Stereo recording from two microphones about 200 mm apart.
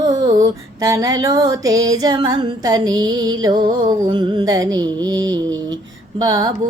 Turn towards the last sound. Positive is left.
turn(degrees=-20)  # may be behind; listen again after turning